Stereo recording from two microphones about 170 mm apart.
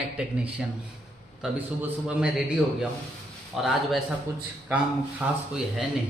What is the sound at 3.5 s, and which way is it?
Speech, centre (ahead or behind).